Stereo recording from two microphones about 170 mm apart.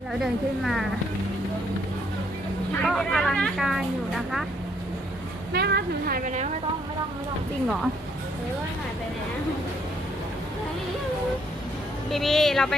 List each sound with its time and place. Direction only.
0.1 s speech: centre (ahead or behind)
2.8 s speech: centre (ahead or behind)
5.5 s speech: 70° right (ahead or behind); by 6.5 s 45° right (ahead or behind)
12.1 s speech: centre (ahead or behind)